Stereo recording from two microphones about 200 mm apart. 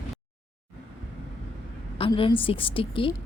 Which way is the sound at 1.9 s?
25° left (ahead or behind).